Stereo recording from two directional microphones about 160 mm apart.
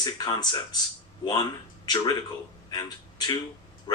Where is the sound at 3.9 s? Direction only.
25° left (ahead or behind).